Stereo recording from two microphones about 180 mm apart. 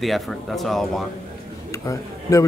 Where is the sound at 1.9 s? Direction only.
20° left (ahead or behind).